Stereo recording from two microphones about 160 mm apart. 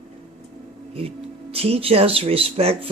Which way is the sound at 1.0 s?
35° right (ahead or behind).